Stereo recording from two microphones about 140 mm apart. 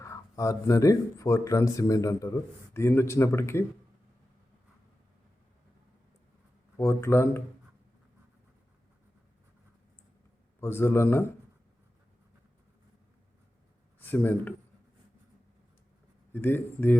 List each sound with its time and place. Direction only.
0.0 s speech: 25° left (ahead or behind)
6.7 s speech: 20° left (ahead or behind)
10.6 s speech: 15° left (ahead or behind)
14.0 s speech: 15° left (ahead or behind)
16.3 s speech: 15° left (ahead or behind)